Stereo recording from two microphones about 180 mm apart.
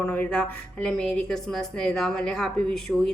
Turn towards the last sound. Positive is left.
turn(degrees=0)  # may be behind; listen again after turning